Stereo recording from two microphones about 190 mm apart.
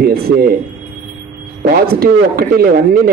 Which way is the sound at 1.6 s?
55° right (ahead or behind).